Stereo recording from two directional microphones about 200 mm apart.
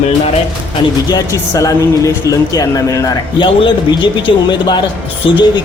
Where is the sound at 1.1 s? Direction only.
15° left (ahead or behind).